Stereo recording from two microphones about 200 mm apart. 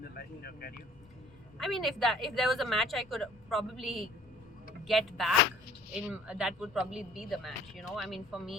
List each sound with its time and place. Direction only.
0.1 s speech: 50° left (ahead or behind)
1.5 s a woman's voice: centre (ahead or behind)